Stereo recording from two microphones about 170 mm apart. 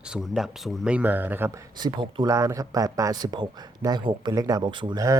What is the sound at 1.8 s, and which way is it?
Speech, 25° right (ahead or behind).